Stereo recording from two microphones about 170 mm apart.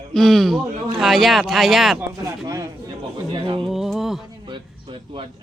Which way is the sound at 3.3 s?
30° right (ahead or behind).